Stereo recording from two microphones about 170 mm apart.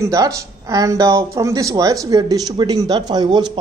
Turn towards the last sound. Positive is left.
turn(degrees=-25)  # may be behind; listen again after turning